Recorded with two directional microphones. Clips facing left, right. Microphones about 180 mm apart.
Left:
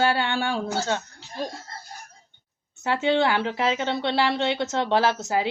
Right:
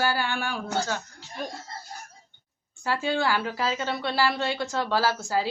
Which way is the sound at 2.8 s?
20° left (ahead or behind).